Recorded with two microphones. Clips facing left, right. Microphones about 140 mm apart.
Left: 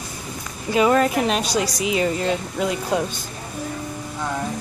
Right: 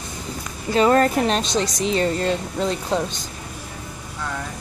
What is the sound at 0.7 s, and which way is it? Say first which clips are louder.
Speech: right 1 dB; 10° left (ahead or behind).